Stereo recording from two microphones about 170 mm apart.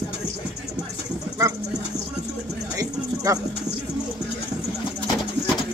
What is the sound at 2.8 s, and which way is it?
Music, 20° right (ahead or behind).